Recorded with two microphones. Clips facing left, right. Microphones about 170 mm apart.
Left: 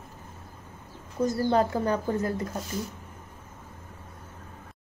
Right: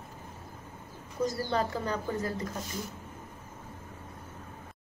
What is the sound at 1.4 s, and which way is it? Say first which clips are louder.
Speech: left 7 dB; 50° left (ahead or behind).